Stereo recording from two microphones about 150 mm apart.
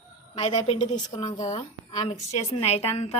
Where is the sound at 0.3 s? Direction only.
45° left (ahead or behind).